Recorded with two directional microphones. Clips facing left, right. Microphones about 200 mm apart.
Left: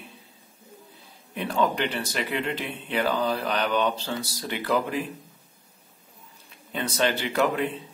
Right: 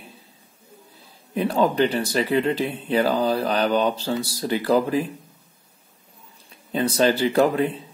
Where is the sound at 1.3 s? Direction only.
35° right (ahead or behind).